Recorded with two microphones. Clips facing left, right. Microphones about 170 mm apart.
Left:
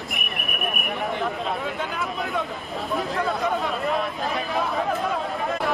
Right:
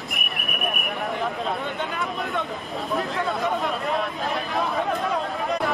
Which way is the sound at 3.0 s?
Centre (ahead or behind).